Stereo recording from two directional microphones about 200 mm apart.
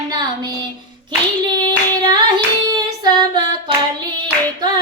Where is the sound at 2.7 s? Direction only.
20° right (ahead or behind).